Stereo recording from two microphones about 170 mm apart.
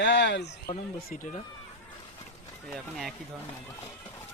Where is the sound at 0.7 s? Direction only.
50° left (ahead or behind).